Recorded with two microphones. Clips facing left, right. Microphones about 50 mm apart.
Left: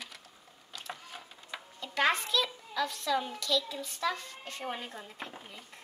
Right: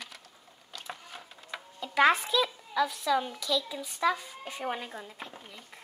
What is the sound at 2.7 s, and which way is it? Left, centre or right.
A child's voice, centre.